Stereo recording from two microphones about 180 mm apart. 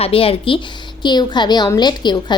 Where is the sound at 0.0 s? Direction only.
30° left (ahead or behind).